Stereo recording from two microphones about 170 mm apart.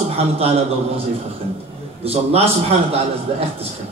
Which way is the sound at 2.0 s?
35° right (ahead or behind).